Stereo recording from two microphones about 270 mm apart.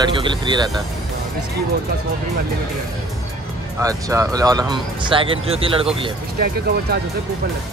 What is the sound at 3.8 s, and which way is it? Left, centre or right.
Speech, centre.